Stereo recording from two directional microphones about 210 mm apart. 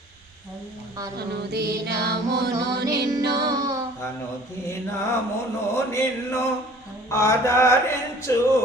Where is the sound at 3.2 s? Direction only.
50° right (ahead or behind).